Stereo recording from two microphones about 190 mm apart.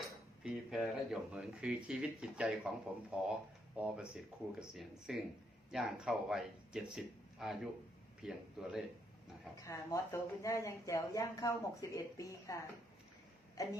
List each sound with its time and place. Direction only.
0.0 s speech: centre (ahead or behind)
9.6 s speech: 15° left (ahead or behind)